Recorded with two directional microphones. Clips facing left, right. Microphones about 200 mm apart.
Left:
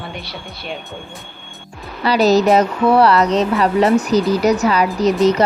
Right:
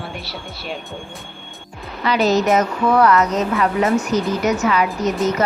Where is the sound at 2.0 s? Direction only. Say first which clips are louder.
Left 4 dB; 35° left (ahead or behind).